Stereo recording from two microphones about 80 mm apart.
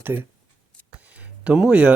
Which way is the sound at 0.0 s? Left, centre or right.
Right.